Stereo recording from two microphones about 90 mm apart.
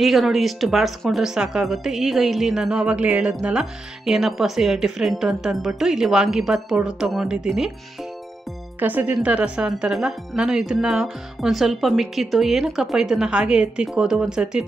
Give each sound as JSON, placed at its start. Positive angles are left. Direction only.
{"t": 0.0, "sound": "speech", "side_deg": 0}
{"t": 8.7, "sound": "speech", "side_deg": -20}